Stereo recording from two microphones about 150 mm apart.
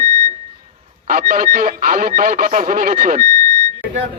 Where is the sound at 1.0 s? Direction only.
70° right (ahead or behind).